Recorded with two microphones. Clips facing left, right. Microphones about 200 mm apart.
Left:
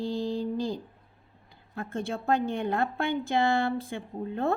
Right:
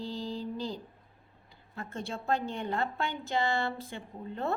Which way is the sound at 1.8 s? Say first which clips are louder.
Left 6 dB; 50° left (ahead or behind).